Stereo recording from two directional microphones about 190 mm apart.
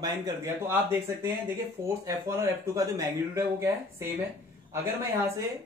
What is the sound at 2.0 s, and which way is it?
Speech, 15° right (ahead or behind).